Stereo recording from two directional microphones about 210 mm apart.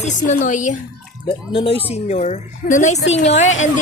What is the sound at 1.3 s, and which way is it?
A woman's voice, 25° left (ahead or behind).